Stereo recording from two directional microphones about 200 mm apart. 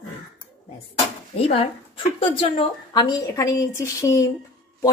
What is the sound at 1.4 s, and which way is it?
Speech, 30° left (ahead or behind).